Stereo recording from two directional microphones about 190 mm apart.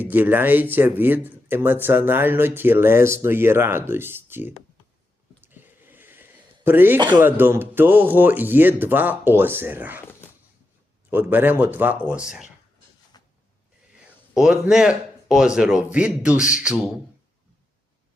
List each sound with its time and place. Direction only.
0.0 s speech: 10° right (ahead or behind)
5.4 s a sound: 10° right (ahead or behind)
7.2 s speech: 10° right (ahead or behind)
11.1 s speech: 10° right (ahead or behind)
13.2 s a sound: 20° left (ahead or behind)
14.3 s a man's voice: 5° right (ahead or behind)